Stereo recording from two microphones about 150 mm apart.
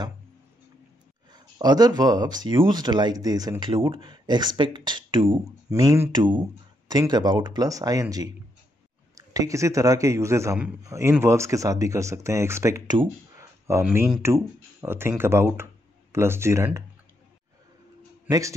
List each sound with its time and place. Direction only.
1.3 s speech: 25° right (ahead or behind)